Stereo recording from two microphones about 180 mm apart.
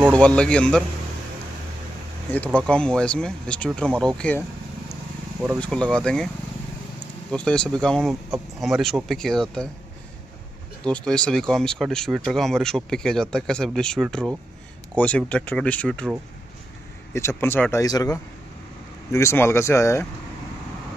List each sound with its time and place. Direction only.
0.1 s speech: 5° left (ahead or behind)
2.3 s speech: 10° left (ahead or behind)
7.2 s speech: 5° left (ahead or behind)
10.8 s speech: 5° left (ahead or behind)
17.1 s speech: 15° left (ahead or behind)